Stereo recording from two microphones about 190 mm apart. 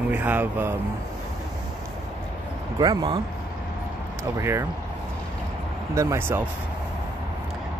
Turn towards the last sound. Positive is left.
turn(degrees=-15)  # may be behind; listen again after turning